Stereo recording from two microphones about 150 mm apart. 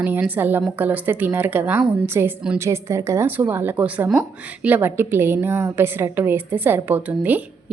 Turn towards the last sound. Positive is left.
turn(degrees=-10)  # may be behind; listen again after turning